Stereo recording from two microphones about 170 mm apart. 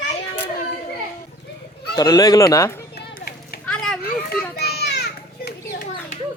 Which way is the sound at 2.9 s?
65° left (ahead or behind).